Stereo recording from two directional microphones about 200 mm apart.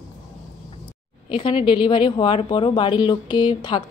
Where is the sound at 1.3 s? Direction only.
25° left (ahead or behind).